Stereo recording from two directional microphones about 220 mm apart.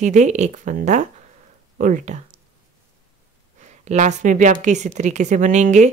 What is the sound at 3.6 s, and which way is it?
A woman's voice, 30° right (ahead or behind).